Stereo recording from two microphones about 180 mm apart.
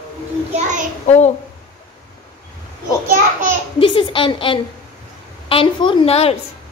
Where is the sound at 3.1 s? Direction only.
45° right (ahead or behind).